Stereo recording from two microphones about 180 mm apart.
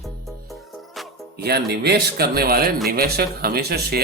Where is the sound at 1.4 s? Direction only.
65° right (ahead or behind).